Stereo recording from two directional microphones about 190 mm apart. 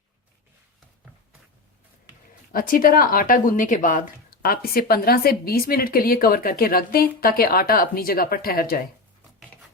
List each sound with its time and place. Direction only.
2.5 s speech: 50° left (ahead or behind)